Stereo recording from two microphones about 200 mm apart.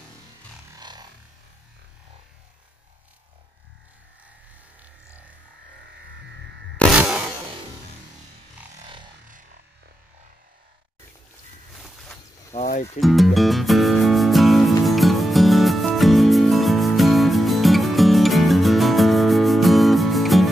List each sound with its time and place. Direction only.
0.7 s music: 20° right (ahead or behind)
6.8 s a sound: 5° right (ahead or behind)
8.8 s music: 25° right (ahead or behind)
12.5 s music: 35° left (ahead or behind)
13.0 s music: centre (ahead or behind)